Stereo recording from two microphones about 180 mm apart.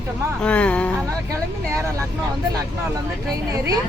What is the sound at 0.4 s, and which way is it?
Speech, 5° left (ahead or behind).